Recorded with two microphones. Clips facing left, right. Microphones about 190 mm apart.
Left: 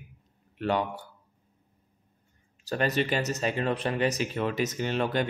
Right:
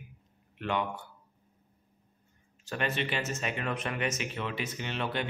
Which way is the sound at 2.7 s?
40° left (ahead or behind).